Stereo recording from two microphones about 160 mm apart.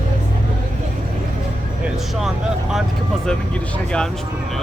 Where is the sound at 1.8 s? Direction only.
5° right (ahead or behind).